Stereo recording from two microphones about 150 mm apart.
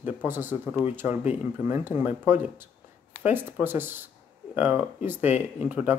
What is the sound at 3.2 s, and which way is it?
Speech, 15° right (ahead or behind).